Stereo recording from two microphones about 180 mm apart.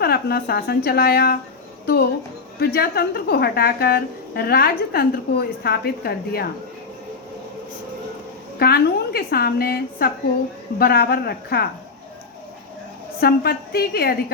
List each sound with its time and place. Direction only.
0.0 s a woman's voice: 60° left (ahead or behind)
2.6 s a woman's voice: 60° left (ahead or behind)
8.5 s a woman's voice: 60° left (ahead or behind)
13.1 s a woman's voice: 60° left (ahead or behind)